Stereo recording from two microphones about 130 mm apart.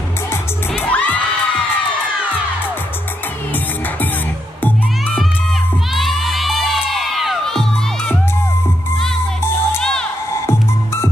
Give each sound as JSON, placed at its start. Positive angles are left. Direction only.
{"t": 0.9, "sound": "children shouting", "side_deg": 10}
{"t": 5.9, "sound": "crowd", "side_deg": 0}
{"t": 9.4, "sound": "music", "side_deg": 20}